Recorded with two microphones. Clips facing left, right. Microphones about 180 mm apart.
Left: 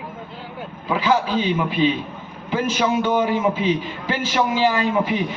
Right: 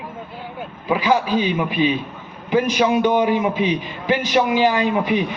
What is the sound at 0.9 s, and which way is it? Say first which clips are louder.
A man's voice: right 2 dB; 15° right (ahead or behind).